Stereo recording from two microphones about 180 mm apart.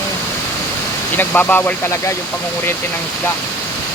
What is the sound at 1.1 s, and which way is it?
Speech, 10° left (ahead or behind).